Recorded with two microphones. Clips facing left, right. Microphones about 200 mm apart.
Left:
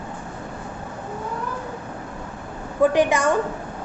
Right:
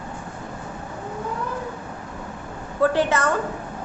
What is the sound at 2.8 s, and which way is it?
Speech, 15° left (ahead or behind).